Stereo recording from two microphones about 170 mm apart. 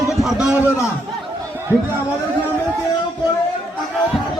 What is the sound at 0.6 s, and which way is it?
Speech, 15° left (ahead or behind).